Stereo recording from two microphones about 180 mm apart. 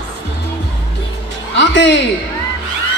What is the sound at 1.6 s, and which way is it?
Music, 85° left.